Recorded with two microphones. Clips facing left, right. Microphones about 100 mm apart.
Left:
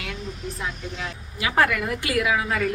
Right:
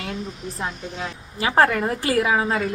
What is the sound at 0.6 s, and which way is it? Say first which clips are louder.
A woman's voice: right 4 dB; 35° right (ahead or behind).